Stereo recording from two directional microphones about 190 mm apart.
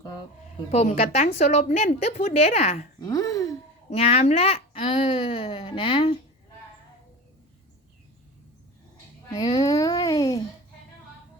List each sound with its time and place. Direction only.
0.7 s a woman's voice: 35° left (ahead or behind)
3.0 s speech: 20° left (ahead or behind)
3.8 s speech: 35° left (ahead or behind)
9.4 s speech: 20° left (ahead or behind)